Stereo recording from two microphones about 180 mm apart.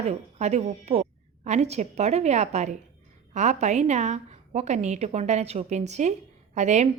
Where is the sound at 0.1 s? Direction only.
40° right (ahead or behind).